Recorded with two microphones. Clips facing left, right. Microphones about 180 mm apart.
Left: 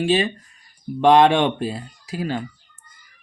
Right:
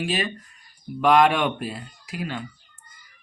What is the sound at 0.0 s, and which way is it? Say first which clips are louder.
Speech: left 7 dB; 30° left (ahead or behind).